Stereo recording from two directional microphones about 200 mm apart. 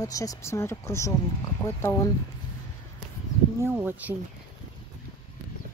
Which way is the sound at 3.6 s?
10° right (ahead or behind).